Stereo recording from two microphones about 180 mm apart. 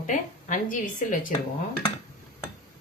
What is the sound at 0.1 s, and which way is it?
Speech, 45° left (ahead or behind).